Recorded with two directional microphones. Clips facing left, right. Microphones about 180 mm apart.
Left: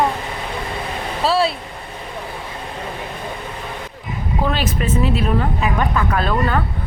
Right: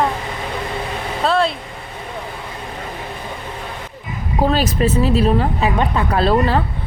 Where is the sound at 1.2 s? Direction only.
5° left (ahead or behind).